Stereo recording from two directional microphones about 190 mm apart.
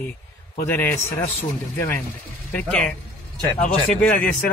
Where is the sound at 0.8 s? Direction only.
10° left (ahead or behind).